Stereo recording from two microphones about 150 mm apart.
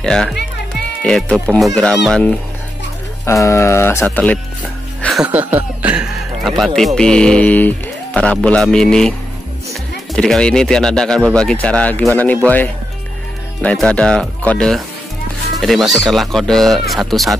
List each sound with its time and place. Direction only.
0.0 s speech: 5° left (ahead or behind)
3.3 s speech: 20° left (ahead or behind)
5.2 s speech: 10° right (ahead or behind); by 9.1 s 5° left (ahead or behind)
10.1 s speech: 5° left (ahead or behind)